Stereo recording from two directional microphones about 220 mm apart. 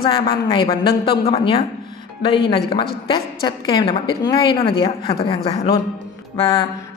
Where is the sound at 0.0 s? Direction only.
25° left (ahead or behind).